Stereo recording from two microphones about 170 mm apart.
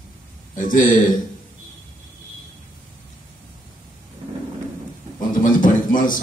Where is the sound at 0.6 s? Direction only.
50° left (ahead or behind).